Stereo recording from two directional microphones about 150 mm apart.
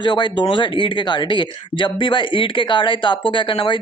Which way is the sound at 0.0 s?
30° left (ahead or behind).